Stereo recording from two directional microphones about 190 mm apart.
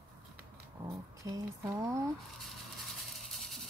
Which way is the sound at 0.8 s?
20° right (ahead or behind).